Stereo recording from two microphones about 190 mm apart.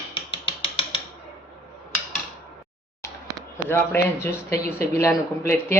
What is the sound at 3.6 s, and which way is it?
Speech, 15° left (ahead or behind).